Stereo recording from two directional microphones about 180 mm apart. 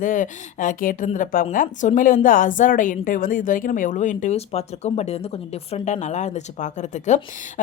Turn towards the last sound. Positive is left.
turn(degrees=40)  # may be behind; listen again after turning